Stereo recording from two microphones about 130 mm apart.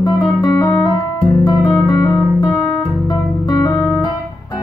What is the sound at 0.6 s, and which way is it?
Music, 25° left (ahead or behind).